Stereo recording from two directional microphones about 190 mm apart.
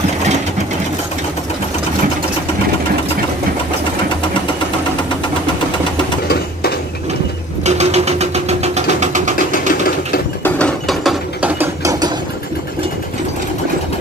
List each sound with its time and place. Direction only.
6.2 s a sound: 55° left (ahead or behind)
7.6 s engine: 35° right (ahead or behind)
9.5 s sewing machine: 50° left (ahead or behind)
10.4 s ratchet: 5° left (ahead or behind)
11.6 s ratchet: 15° right (ahead or behind)